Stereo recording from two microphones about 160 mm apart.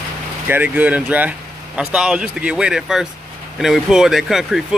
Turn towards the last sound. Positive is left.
turn(degrees=0)  # may be behind; listen again after turning